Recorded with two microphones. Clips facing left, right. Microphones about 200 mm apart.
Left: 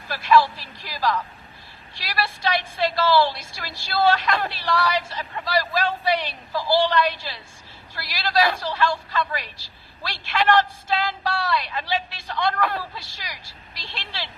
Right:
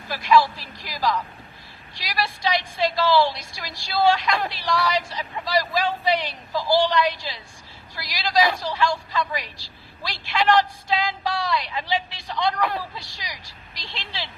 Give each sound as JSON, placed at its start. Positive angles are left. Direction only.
{"t": 0.1, "sound": "a woman's voice", "side_deg": -15}